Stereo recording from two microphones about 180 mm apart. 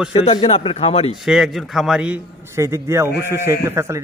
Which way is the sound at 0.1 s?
30° left (ahead or behind).